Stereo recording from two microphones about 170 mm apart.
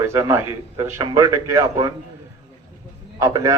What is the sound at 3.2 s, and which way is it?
Speech, 20° right (ahead or behind).